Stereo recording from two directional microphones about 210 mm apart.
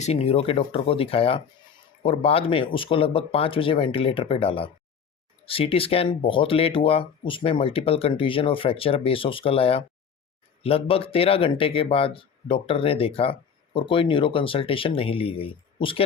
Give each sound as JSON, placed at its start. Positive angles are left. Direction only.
{"t": 0.0, "sound": "speech", "side_deg": 30}